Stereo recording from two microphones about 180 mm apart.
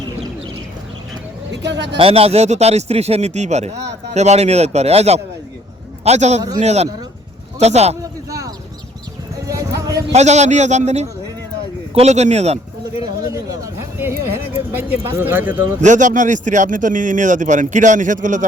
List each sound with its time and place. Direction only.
1.6 s speech: 75° right (ahead or behind)
2.0 s speech: 30° right (ahead or behind)
9.5 s a sound: 20° right (ahead or behind)
10.1 s speech: 40° right (ahead or behind)
13.3 s speech: 15° right (ahead or behind)
15.8 s a man's voice: 45° right (ahead or behind)